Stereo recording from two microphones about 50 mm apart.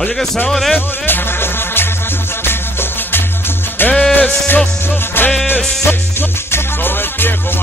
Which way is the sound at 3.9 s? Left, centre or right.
Left.